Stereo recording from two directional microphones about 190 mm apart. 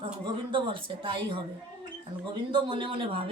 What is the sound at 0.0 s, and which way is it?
A woman's voice, 25° right (ahead or behind).